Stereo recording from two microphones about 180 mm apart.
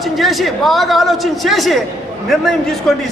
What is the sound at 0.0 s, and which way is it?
A woman's voice, centre (ahead or behind).